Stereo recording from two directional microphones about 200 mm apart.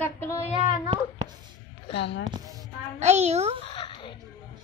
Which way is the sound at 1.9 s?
60° left (ahead or behind).